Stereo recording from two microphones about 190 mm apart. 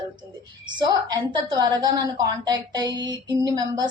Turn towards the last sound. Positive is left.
turn(degrees=-20)  # may be behind; listen again after turning